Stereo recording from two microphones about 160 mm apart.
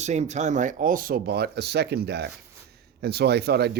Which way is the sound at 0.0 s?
45° right (ahead or behind).